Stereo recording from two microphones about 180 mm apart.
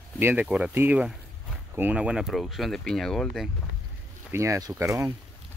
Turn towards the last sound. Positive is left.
turn(degrees=-15)  # may be behind; listen again after turning